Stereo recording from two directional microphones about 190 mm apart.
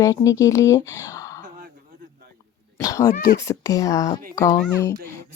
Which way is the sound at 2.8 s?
15° left (ahead or behind).